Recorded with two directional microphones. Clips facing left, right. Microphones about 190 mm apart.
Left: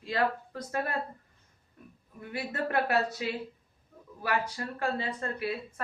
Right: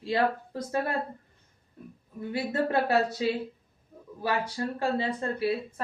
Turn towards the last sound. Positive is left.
turn(degrees=-30)  # may be behind; listen again after turning